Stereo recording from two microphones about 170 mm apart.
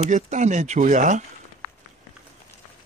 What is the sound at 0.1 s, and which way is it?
Speech, 45° right (ahead or behind).